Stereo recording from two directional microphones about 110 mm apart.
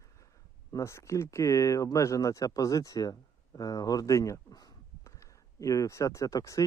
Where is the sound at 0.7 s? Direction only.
25° left (ahead or behind).